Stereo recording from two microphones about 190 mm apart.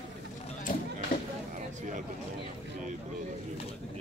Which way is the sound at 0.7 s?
45° left (ahead or behind).